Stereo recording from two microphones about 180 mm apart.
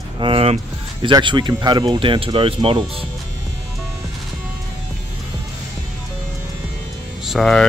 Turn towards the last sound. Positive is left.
turn(degrees=5)  # may be behind; listen again after turning